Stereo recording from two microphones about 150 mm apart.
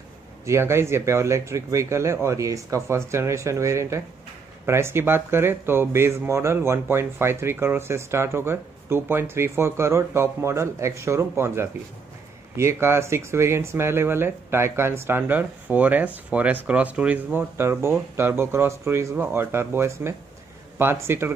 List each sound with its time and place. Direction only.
0.5 s speech: 15° right (ahead or behind)